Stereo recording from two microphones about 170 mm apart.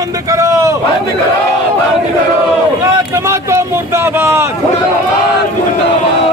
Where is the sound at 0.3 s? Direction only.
20° right (ahead or behind).